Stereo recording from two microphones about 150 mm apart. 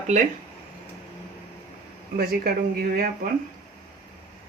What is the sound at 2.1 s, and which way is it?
Speech, 85° right.